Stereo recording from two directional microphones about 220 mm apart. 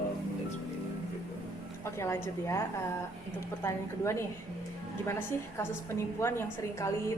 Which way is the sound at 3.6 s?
15° left (ahead or behind).